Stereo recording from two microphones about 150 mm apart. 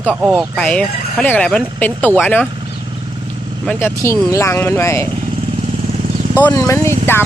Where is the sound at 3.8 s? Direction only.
15° left (ahead or behind).